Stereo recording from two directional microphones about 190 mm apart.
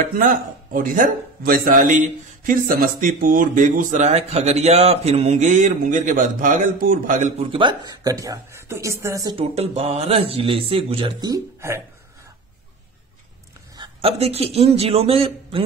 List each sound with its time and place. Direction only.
0.0 s a man's voice: 45° right (ahead or behind)
7.5 s speech: 25° right (ahead or behind)
13.7 s speech: 30° right (ahead or behind)